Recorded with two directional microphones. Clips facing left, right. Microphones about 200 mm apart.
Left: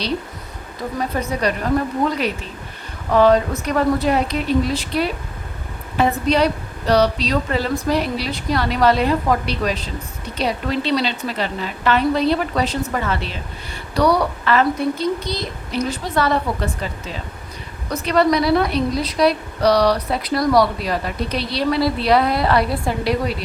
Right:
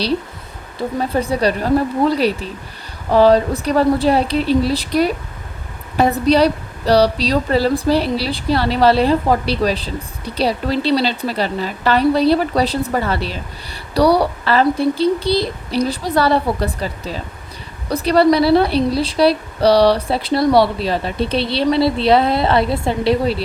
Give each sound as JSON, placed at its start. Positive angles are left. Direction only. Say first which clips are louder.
{"t": 0.8, "sound": "a woman's voice", "louder": "right 4 dB", "side_deg": -30}